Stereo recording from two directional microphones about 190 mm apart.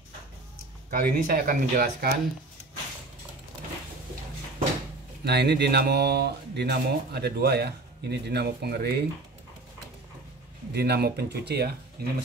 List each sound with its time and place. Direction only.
0.8 s speech: 50° right (ahead or behind)
5.2 s speech: 60° right (ahead or behind)
10.7 s speech: 55° right (ahead or behind)